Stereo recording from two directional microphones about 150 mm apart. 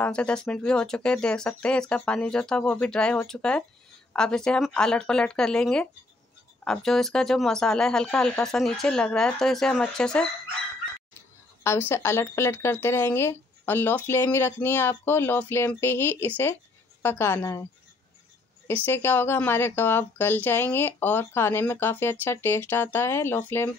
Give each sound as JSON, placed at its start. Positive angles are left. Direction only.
{"t": 0.0, "sound": "speech", "side_deg": 5}
{"t": 11.6, "sound": "speech", "side_deg": 15}
{"t": 18.9, "sound": "speech", "side_deg": 15}